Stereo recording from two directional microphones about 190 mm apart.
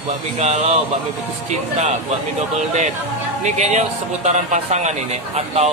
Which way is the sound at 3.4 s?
35° right (ahead or behind).